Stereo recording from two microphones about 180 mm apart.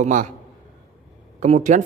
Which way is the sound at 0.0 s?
45° right (ahead or behind).